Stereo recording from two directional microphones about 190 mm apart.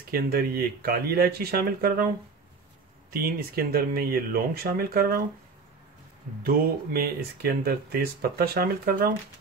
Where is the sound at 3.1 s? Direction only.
50° right (ahead or behind).